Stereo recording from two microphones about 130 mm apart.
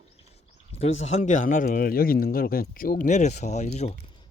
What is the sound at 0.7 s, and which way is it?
Speech, 55° left (ahead or behind).